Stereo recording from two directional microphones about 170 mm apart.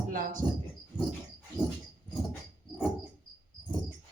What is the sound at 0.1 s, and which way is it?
Speech, 50° right (ahead or behind).